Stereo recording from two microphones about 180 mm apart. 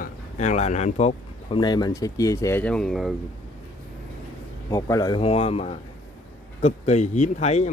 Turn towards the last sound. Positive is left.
turn(degrees=40)  # may be behind; listen again after turning